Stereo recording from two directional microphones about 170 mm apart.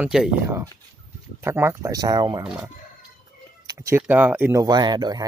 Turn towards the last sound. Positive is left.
turn(degrees=-25)  # may be behind; listen again after turning